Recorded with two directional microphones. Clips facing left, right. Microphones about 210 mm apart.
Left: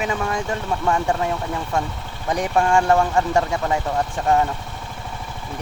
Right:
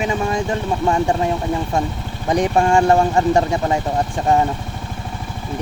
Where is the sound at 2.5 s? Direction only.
30° right (ahead or behind).